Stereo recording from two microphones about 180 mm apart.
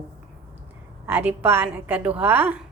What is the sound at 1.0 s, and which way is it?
A woman's voice, 10° right (ahead or behind).